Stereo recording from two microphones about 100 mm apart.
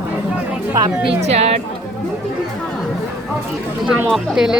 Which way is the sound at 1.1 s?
90° right.